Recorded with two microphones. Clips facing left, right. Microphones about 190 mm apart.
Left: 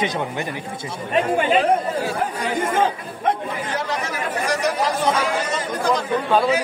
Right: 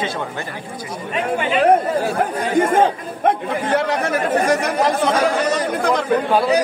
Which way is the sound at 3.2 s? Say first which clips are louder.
Right 4 dB; 60° right (ahead or behind).